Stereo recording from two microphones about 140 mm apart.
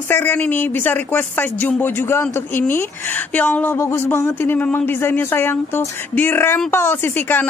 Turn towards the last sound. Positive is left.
turn(degrees=15)  # may be behind; listen again after turning